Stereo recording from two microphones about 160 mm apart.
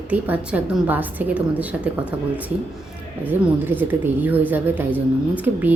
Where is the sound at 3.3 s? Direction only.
10° right (ahead or behind).